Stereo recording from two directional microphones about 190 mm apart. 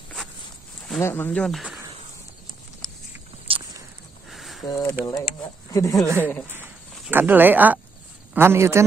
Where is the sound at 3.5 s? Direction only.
30° right (ahead or behind).